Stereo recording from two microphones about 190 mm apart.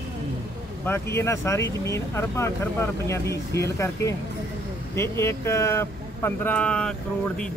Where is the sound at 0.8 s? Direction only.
10° left (ahead or behind).